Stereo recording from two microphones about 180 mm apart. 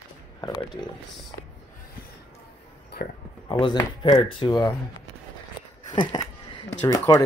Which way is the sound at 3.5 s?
25° left (ahead or behind).